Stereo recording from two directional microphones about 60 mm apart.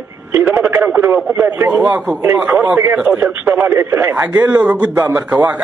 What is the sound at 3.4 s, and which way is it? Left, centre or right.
Speech, right.